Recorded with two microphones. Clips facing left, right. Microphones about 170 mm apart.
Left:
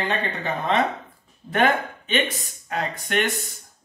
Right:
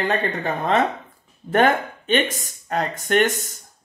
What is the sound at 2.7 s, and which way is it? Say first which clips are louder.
Speech: right 5 dB; 45° right (ahead or behind).